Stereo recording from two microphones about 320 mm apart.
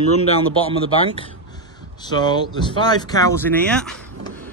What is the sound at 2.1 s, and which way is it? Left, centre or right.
Speech, centre.